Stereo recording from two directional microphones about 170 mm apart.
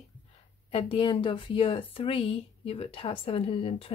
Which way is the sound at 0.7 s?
35° left (ahead or behind).